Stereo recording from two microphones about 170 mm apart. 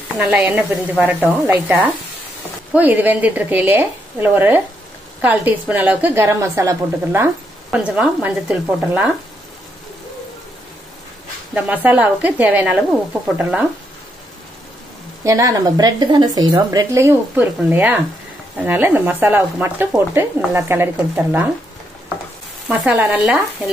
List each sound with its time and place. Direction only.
0.2 s speech: 10° right (ahead or behind)
11.5 s speech: 10° right (ahead or behind)
15.2 s speech: 20° right (ahead or behind)
22.7 s speech: 10° right (ahead or behind)